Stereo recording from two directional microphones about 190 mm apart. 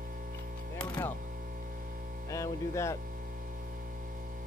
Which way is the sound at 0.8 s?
10° left (ahead or behind).